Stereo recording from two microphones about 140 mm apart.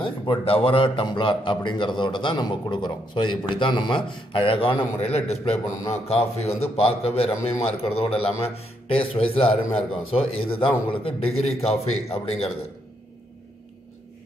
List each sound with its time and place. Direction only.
0.0 s a man's voice: 40° left (ahead or behind)